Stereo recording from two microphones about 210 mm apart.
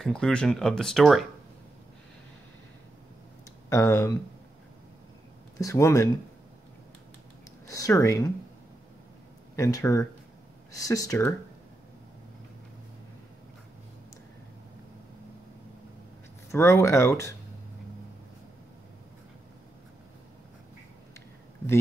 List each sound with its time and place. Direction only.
0.0 s speech: 5° left (ahead or behind)
3.6 s speech: 15° left (ahead or behind)
5.6 s speech: 15° left (ahead or behind)
7.6 s speech: 15° left (ahead or behind)
9.6 s speech: 15° left (ahead or behind)
16.5 s speech: 10° left (ahead or behind)